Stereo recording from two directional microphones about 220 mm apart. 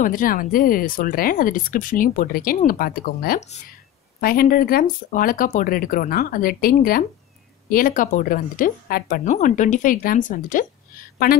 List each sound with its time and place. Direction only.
0.0 s a woman's voice: 40° left (ahead or behind)